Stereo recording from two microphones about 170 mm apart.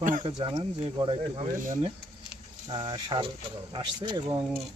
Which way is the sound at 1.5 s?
50° right (ahead or behind).